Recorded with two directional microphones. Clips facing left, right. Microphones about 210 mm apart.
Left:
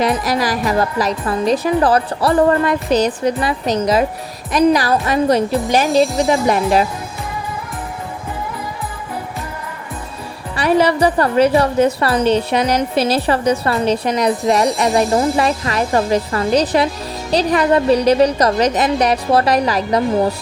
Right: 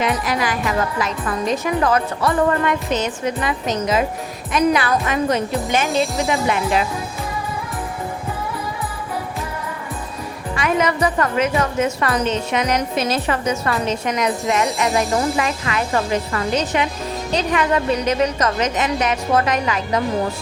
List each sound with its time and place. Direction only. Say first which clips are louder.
0.0 s speech: left 4 dB; 35° left (ahead or behind)
5.9 s speech: left 6 dB; centre (ahead or behind)
6.2 s speech: left 5 dB; 35° left (ahead or behind)
10.5 s speech: left 5 dB; 35° left (ahead or behind)